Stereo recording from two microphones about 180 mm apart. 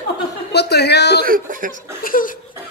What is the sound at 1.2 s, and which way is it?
Speech, 50° right (ahead or behind).